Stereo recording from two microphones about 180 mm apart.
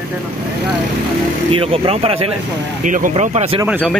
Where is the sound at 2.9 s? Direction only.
45° right (ahead or behind).